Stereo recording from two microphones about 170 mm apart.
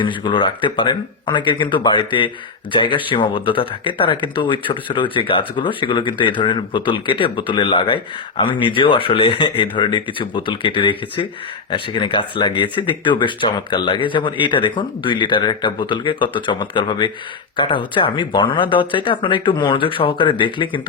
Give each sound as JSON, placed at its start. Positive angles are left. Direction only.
{"t": 0.0, "sound": "speech", "side_deg": 30}